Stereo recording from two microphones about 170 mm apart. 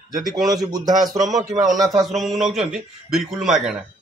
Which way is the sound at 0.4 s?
20° right (ahead or behind).